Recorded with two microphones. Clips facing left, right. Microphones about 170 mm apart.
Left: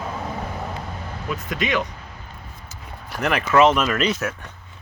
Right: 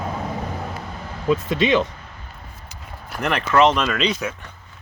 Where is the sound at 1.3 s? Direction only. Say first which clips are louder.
Right 7 dB; 25° right (ahead or behind).